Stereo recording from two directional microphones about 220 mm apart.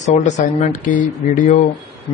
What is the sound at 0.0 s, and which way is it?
Speech, 30° left (ahead or behind).